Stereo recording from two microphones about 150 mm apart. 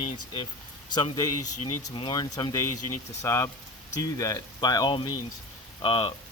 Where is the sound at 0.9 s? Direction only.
30° left (ahead or behind).